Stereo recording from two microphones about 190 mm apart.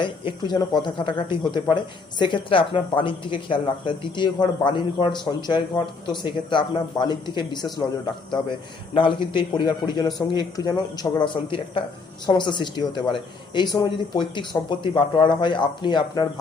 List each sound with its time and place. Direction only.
0.0 s speech: 25° left (ahead or behind)